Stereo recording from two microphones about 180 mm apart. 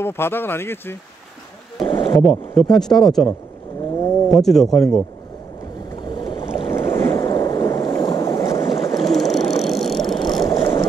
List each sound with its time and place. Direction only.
0.0 s speech: 15° left (ahead or behind)
1.9 s a sound: 25° left (ahead or behind)
2.5 s speech: 5° left (ahead or behind)
4.4 s speech: centre (ahead or behind)
6.0 s boat: 25° left (ahead or behind)
6.7 s boat: 15° left (ahead or behind)
9.1 s ratchet: centre (ahead or behind)
9.4 s vehicle: 35° left (ahead or behind)
9.7 s vehicle: centre (ahead or behind)
10.0 s vehicle: 25° left (ahead or behind)